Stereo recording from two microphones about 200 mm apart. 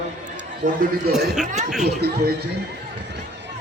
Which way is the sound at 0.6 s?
40° right (ahead or behind).